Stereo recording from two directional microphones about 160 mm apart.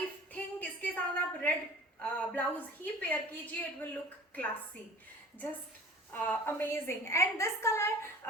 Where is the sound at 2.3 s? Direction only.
10° left (ahead or behind).